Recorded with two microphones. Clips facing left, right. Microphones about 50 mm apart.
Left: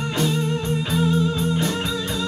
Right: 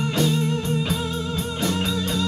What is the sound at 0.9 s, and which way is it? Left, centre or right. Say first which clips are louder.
Music: left 5 dB; left.